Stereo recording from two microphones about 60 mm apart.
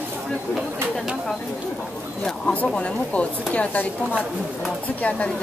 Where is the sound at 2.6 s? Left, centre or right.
Centre.